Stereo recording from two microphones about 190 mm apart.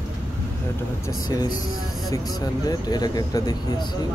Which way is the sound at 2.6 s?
20° left (ahead or behind).